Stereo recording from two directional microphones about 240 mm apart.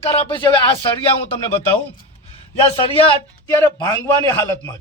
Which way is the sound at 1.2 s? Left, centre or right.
Left.